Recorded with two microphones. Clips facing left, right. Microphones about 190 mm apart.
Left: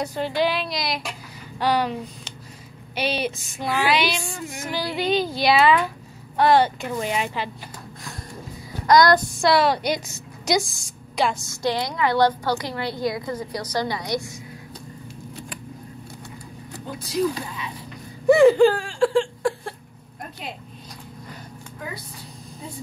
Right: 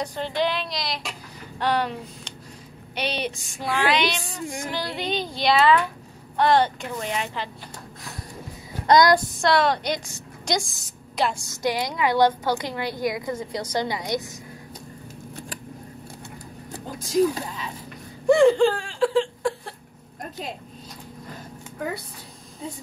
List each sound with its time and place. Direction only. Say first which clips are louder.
0.0 s a woman's voice: left 2 dB; 5° left (ahead or behind)
3.0 s a sound: left 3 dB; 5° left (ahead or behind)
6.3 s a woman's voice: left 2 dB; 5° left (ahead or behind)
8.8 s child singing: left 1 dB; 20° right (ahead or behind)
9.4 s a woman's voice: left 2 dB; 10° left (ahead or behind)
11.4 s a woman's voice: left 1 dB; 15° right (ahead or behind)
18.2 s a sound: left 3 dB; 5° left (ahead or behind)